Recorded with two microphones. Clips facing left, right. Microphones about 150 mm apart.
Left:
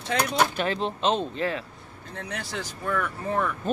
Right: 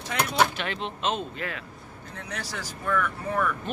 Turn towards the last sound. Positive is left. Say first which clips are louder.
# even
turn(degrees=25)  # may be behind; listen again after turning